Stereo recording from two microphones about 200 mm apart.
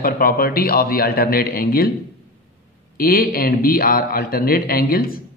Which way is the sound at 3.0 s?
45° left (ahead or behind).